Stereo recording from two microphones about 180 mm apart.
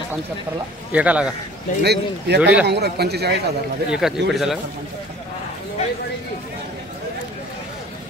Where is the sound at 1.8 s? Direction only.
65° right (ahead or behind).